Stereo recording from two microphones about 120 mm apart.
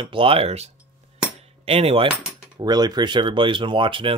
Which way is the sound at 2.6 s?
35° right (ahead or behind).